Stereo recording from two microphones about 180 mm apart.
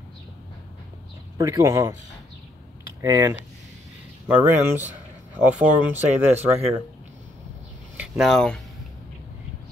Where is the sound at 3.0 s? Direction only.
20° right (ahead or behind).